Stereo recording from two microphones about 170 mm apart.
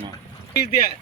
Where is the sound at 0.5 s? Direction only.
65° left (ahead or behind).